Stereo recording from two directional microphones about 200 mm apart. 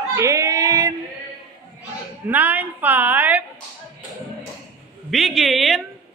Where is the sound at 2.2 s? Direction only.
10° right (ahead or behind).